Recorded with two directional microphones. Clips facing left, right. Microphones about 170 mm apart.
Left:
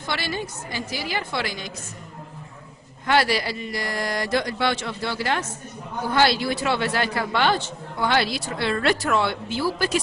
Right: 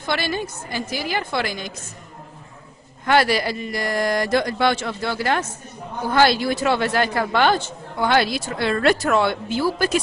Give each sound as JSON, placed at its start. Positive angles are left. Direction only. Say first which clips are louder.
{"t": 0.1, "sound": "a man's voice", "louder": "right 4 dB", "side_deg": -50}
{"t": 3.1, "sound": "a man's voice", "louder": "right 3 dB", "side_deg": -50}